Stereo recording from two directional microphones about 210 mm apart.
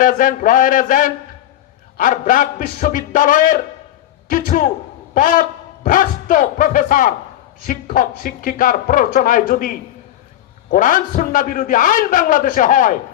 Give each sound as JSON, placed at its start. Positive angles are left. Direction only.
{"t": 0.0, "sound": "a man's voice", "side_deg": 40}